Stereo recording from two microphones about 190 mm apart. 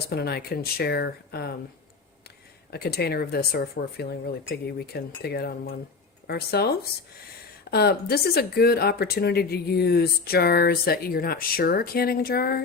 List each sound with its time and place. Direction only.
0.1 s speech: 55° left (ahead or behind)
2.6 s speech: 55° left (ahead or behind)